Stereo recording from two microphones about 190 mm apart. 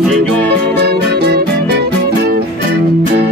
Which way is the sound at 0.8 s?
60° right (ahead or behind).